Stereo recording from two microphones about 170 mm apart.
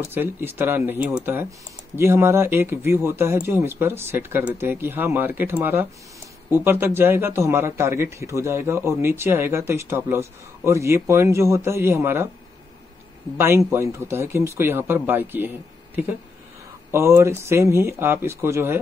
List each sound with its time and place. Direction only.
0.1 s speech: 10° right (ahead or behind)
13.4 s speech: 15° right (ahead or behind)
16.9 s speech: 15° right (ahead or behind)